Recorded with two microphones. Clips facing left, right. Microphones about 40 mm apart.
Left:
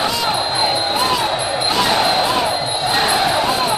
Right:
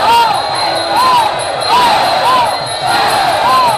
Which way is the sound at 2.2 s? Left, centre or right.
Right.